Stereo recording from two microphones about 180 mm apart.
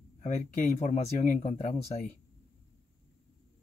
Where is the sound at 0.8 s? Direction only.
40° left (ahead or behind).